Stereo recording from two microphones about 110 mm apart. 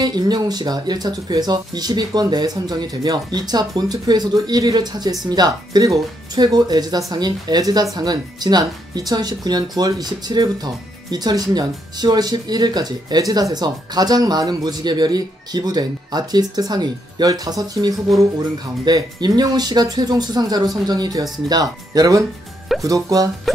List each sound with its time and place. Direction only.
0.0 s speech: 35° right (ahead or behind)